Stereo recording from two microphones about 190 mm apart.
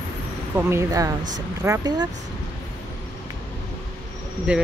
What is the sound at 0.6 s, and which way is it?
Speech, 15° right (ahead or behind).